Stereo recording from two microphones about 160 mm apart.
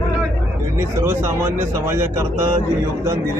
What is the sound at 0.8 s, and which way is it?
Speech, 15° right (ahead or behind).